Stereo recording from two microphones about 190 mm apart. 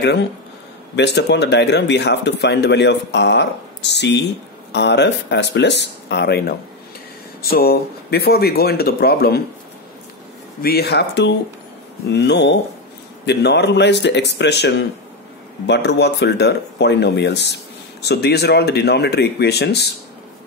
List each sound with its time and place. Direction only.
0.9 s speech: 65° left (ahead or behind)
10.6 s speech: 55° left (ahead or behind)